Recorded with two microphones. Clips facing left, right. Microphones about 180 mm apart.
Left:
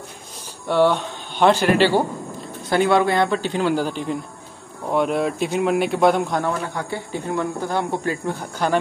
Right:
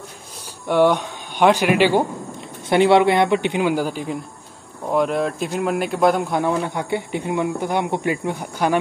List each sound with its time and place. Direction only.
0.7 s a man's voice: 15° right (ahead or behind)
6.4 s speech: 20° right (ahead or behind)